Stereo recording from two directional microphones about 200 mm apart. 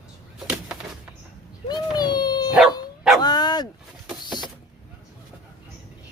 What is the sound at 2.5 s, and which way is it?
Dog, 5° right (ahead or behind).